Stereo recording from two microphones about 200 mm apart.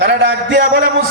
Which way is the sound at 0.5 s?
45° right (ahead or behind).